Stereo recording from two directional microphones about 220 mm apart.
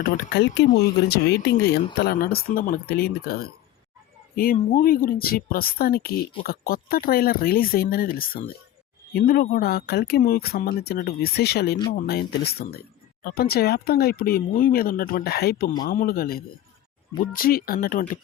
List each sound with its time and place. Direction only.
0.3 s speech: 50° left (ahead or behind)